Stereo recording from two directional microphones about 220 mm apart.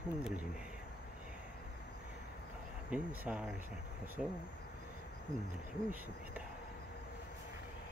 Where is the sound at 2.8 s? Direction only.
5° right (ahead or behind).